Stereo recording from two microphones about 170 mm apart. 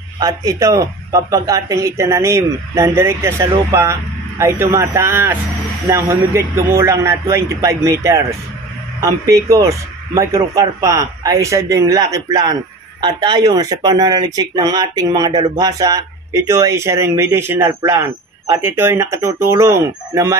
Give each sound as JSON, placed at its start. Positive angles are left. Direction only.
{"t": 0.2, "sound": "speech", "side_deg": -20}